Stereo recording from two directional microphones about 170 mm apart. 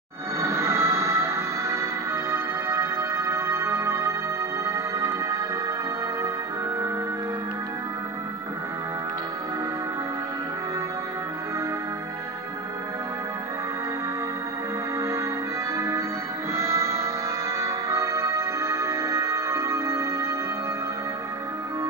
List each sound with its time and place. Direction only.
0.4 s music: 15° right (ahead or behind)
15.0 s music: 15° right (ahead or behind)